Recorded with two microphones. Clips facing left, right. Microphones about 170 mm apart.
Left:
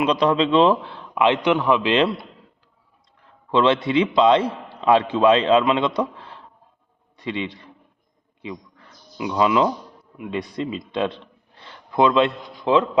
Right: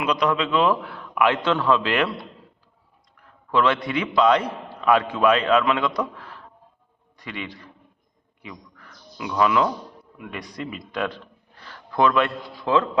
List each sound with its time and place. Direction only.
0.0 s a man's voice: 30° left (ahead or behind)
3.2 s a man's voice: 25° left (ahead or behind)
8.4 s a sound: 25° left (ahead or behind)
10.2 s a man's voice: 25° left (ahead or behind)